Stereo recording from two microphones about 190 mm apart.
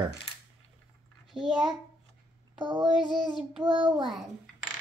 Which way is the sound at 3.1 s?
Centre (ahead or behind).